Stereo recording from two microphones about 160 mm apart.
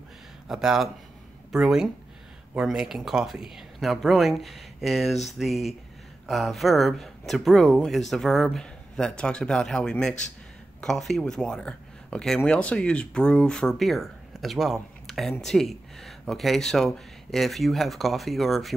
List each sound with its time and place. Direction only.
0.5 s speech: 5° right (ahead or behind)